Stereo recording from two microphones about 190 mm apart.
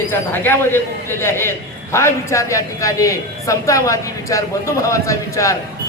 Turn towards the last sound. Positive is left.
turn(degrees=15)  # may be behind; listen again after turning